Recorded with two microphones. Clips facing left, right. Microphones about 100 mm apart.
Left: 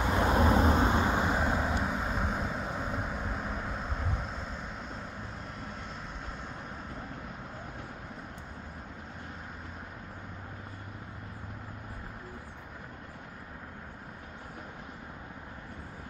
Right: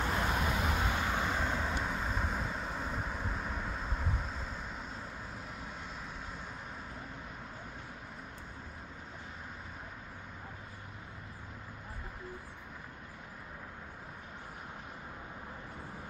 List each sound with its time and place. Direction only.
0.1 s vehicle: 30° left (ahead or behind); by 4.1 s 5° left (ahead or behind)